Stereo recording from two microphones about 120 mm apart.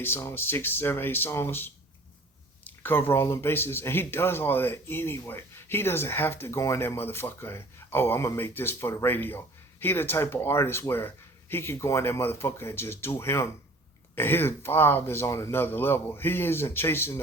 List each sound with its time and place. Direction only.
0.0 s speech: 20° left (ahead or behind)